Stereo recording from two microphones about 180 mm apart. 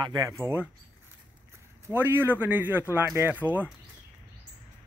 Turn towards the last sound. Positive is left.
turn(degrees=-10)  # may be behind; listen again after turning